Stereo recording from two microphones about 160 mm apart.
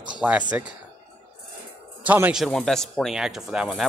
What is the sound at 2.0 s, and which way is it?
Speech, 10° right (ahead or behind).